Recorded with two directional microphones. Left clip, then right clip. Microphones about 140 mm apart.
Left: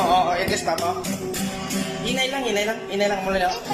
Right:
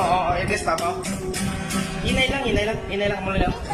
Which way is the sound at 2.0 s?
Centre (ahead or behind).